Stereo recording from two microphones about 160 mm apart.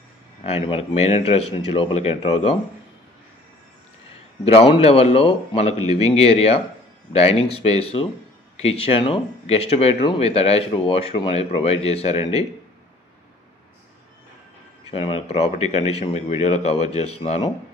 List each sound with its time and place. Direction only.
0.4 s speech: 35° left (ahead or behind)
4.5 s speech: 40° left (ahead or behind)
14.9 s speech: 40° left (ahead or behind)